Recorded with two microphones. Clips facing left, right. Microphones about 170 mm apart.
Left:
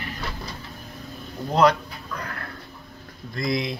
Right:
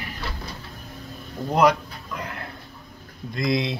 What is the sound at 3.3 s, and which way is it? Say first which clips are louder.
Speech: right 2 dB; 20° right (ahead or behind).